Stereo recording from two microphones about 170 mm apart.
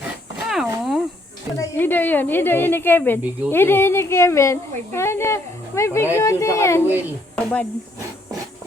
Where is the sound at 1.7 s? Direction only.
10° left (ahead or behind).